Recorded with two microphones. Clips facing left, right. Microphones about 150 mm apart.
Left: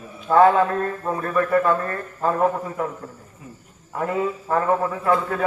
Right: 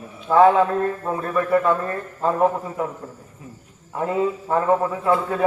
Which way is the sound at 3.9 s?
20° right (ahead or behind).